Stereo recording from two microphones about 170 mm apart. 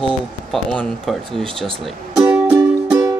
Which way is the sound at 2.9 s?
15° right (ahead or behind).